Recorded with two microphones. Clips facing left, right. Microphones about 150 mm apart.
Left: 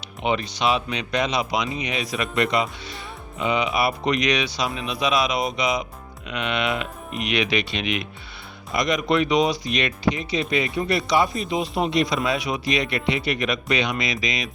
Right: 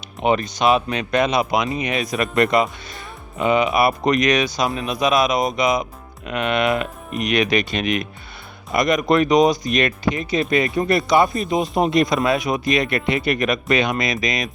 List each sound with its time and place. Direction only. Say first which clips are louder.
0.2 s speech: right 5 dB; 45° right (ahead or behind)